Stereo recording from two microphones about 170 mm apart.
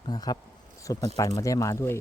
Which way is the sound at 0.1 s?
25° left (ahead or behind).